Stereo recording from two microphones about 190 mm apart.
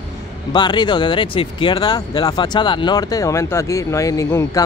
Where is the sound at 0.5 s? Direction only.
25° left (ahead or behind).